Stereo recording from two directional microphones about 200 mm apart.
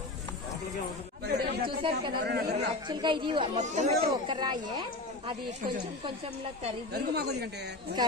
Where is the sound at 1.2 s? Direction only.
55° right (ahead or behind).